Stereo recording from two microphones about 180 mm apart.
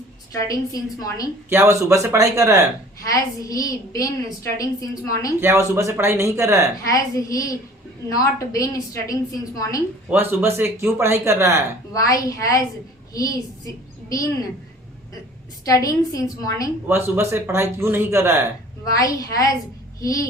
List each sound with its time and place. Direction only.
0.4 s a woman's voice: 20° left (ahead or behind)
1.5 s a man's voice: 15° right (ahead or behind)
3.0 s a woman's voice: 20° left (ahead or behind)
5.4 s a man's voice: 15° right (ahead or behind)
6.9 s a woman's voice: 20° left (ahead or behind)
10.1 s a man's voice: 10° right (ahead or behind)
11.9 s a woman's voice: 20° left (ahead or behind)
15.6 s a woman's voice: 20° left (ahead or behind)
16.8 s a man's voice: 15° right (ahead or behind)
18.9 s a woman's voice: 20° left (ahead or behind)